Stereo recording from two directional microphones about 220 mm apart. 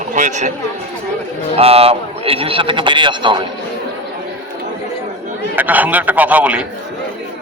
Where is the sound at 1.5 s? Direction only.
25° right (ahead or behind).